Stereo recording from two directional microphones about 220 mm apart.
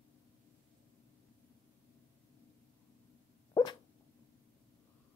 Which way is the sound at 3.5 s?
20° left (ahead or behind).